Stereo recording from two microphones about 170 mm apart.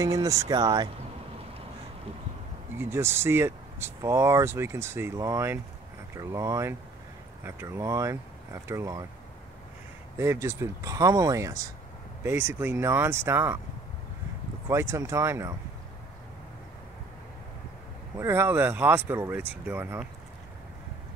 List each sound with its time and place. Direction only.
0.0 s speech: 20° right (ahead or behind)
2.8 s speech: 15° right (ahead or behind)
10.1 s speech: 15° right (ahead or behind)
14.7 s speech: 15° right (ahead or behind)
18.2 s speech: 15° right (ahead or behind)